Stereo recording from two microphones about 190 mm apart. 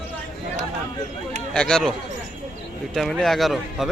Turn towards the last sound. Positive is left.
turn(degrees=0)  # may be behind; listen again after turning